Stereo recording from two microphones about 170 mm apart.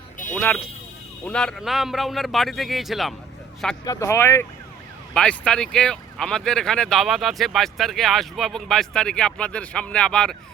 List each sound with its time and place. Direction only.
0.3 s speech: 10° left (ahead or behind)
3.8 s speech: 15° left (ahead or behind)